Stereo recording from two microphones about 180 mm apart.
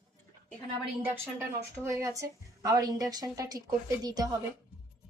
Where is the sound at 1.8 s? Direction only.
15° right (ahead or behind).